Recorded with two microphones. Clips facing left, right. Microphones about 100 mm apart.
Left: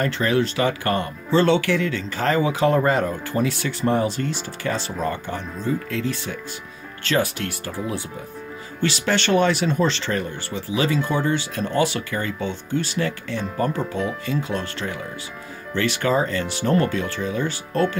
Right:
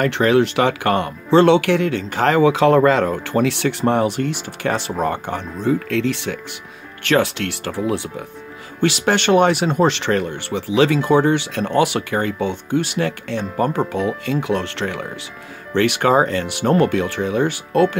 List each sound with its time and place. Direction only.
0.0 s speech: 75° right (ahead or behind)
8.8 s speech: 55° right (ahead or behind); by 15.0 s 75° right (ahead or behind)
15.7 s speech: 60° right (ahead or behind)